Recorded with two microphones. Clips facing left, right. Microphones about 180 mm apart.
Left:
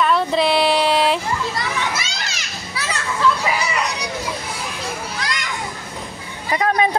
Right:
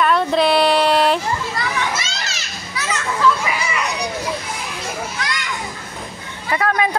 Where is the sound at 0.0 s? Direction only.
Centre (ahead or behind).